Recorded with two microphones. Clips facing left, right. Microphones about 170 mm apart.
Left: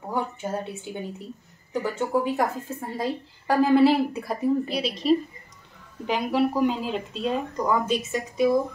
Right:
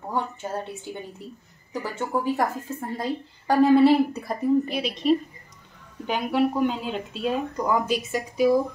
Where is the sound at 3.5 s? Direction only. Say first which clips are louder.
Right 2 dB; centre (ahead or behind).